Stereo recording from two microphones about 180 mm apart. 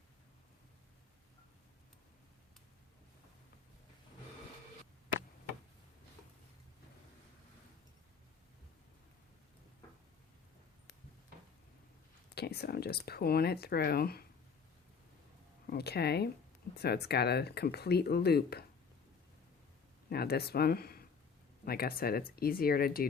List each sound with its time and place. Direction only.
12.3 s speech: 65° left (ahead or behind)
15.6 s speech: 60° left (ahead or behind)
20.1 s speech: 60° left (ahead or behind)